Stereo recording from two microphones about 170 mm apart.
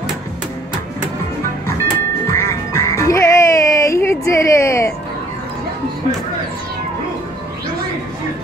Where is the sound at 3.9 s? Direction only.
15° left (ahead or behind).